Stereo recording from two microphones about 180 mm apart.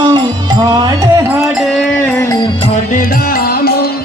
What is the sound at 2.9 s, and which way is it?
Music, 55° left (ahead or behind).